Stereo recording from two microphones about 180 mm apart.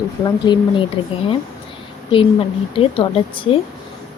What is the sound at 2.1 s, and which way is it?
Speech, 30° left (ahead or behind).